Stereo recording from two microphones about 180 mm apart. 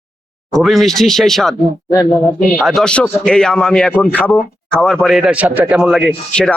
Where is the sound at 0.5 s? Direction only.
Centre (ahead or behind).